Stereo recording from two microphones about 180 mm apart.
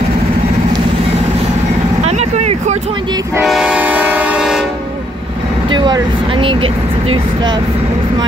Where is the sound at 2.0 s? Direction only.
40° right (ahead or behind).